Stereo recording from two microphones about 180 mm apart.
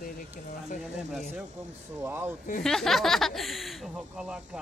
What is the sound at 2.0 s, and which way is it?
Speech, 15° right (ahead or behind).